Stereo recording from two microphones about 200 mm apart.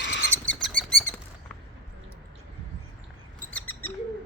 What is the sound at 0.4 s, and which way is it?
Bird flight, 5° left (ahead or behind).